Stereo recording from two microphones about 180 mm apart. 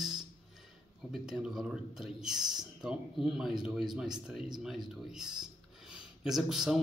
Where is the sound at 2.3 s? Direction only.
25° right (ahead or behind).